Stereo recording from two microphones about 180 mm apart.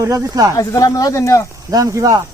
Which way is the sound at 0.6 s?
20° left (ahead or behind).